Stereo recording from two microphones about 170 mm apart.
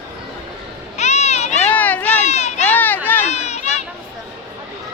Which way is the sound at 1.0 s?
40° left (ahead or behind).